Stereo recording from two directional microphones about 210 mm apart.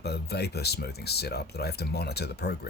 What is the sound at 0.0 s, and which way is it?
Speech, 50° left (ahead or behind).